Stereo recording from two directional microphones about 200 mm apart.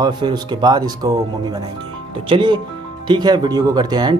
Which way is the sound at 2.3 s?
25° right (ahead or behind).